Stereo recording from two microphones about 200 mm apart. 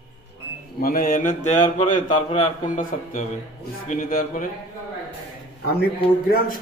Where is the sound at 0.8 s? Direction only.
45° left (ahead or behind).